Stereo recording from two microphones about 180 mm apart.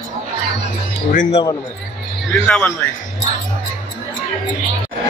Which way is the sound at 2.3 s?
10° left (ahead or behind).